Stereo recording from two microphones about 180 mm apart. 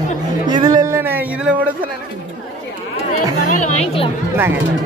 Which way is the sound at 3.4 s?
40° left (ahead or behind).